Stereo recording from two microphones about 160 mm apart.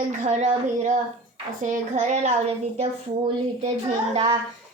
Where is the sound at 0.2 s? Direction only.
45° right (ahead or behind).